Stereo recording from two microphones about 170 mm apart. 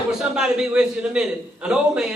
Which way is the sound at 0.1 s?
5° right (ahead or behind).